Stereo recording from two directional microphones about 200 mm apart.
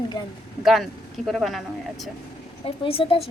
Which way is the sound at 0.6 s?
Centre (ahead or behind).